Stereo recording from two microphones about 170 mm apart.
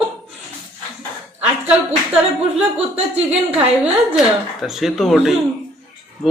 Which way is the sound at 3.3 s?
5° right (ahead or behind).